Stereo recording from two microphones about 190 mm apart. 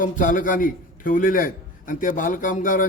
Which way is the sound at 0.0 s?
45° left (ahead or behind).